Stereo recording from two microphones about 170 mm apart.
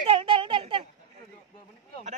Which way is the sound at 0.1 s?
30° right (ahead or behind).